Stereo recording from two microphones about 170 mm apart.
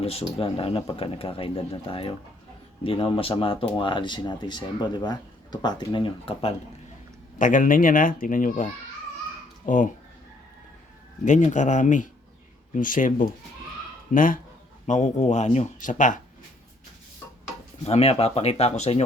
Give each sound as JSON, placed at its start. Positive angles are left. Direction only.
{"t": 0.0, "sound": "speech", "side_deg": 35}
{"t": 7.3, "sound": "speech", "side_deg": 50}
{"t": 11.3, "sound": "speech", "side_deg": 45}
{"t": 17.8, "sound": "speech", "side_deg": 35}